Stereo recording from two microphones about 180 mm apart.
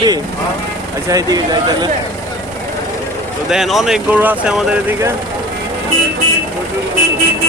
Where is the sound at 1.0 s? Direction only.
20° right (ahead or behind).